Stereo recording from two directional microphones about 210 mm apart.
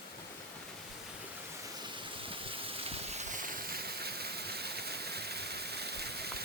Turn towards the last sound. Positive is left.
turn(degrees=-50)  # may be behind; listen again after turning